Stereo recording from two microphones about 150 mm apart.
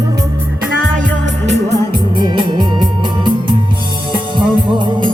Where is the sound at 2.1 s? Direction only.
30° right (ahead or behind).